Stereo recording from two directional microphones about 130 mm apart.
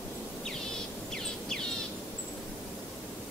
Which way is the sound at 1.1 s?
5° left (ahead or behind).